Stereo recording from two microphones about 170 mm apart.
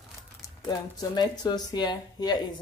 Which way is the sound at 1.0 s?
25° left (ahead or behind).